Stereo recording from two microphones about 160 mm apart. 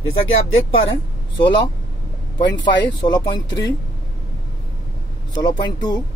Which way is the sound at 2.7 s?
25° left (ahead or behind).